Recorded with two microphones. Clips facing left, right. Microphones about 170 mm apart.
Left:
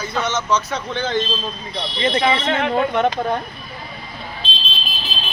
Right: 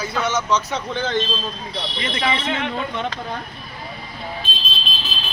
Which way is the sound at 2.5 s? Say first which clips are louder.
Left 6 dB; 55° left (ahead or behind).